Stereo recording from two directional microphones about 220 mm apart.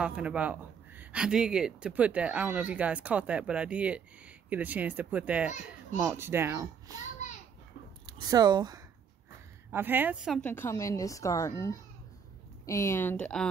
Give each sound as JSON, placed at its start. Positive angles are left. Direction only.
{"t": 0.0, "sound": "a child's voice", "side_deg": -5}
{"t": 8.1, "sound": "a child's voice", "side_deg": -20}
{"t": 10.4, "sound": "a woman's voice", "side_deg": 10}